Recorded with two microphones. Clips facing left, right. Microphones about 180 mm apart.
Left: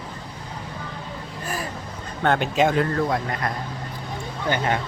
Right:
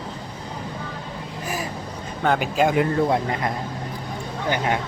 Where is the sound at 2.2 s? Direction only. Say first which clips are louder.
Even; 5° right (ahead or behind); by 3.5 s 20° right (ahead or behind).